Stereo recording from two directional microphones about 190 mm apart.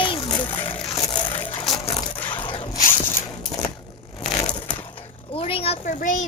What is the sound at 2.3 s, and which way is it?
Zipper, 25° left (ahead or behind).